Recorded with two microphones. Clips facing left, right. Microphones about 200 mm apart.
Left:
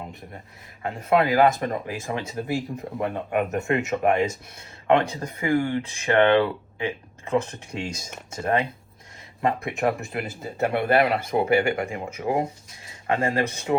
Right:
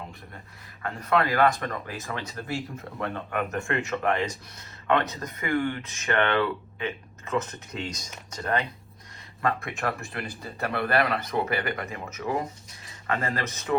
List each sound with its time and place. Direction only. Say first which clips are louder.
0.9 s speech: left 4 dB; 25° left (ahead or behind)
10.1 s speech: left 5 dB; 25° left (ahead or behind)